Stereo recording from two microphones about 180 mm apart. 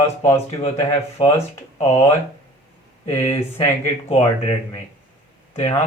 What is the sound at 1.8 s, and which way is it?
Speech, 35° left (ahead or behind).